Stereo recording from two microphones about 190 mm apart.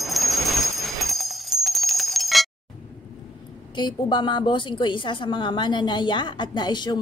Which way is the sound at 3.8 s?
25° left (ahead or behind).